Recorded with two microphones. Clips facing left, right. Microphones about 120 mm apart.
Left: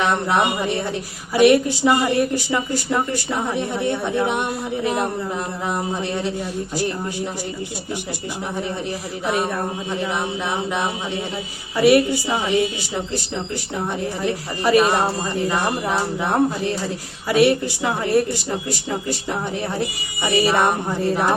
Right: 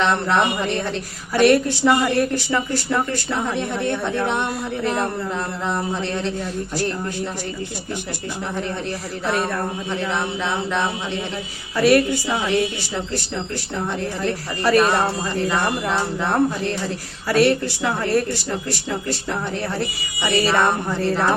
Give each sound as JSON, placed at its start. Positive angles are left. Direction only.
{"t": 0.0, "sound": "speech", "side_deg": 15}
{"t": 9.2, "sound": "speech", "side_deg": 15}